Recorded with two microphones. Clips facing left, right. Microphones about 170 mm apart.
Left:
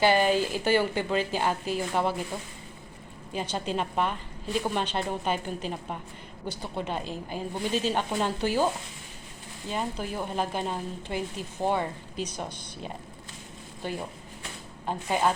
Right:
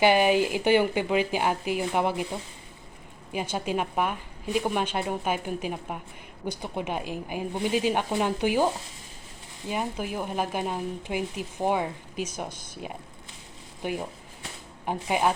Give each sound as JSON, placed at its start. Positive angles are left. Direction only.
{"t": 0.0, "sound": "a woman's voice", "side_deg": -15}